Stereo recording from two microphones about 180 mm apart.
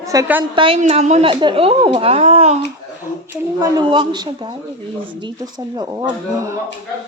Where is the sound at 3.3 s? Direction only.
20° right (ahead or behind).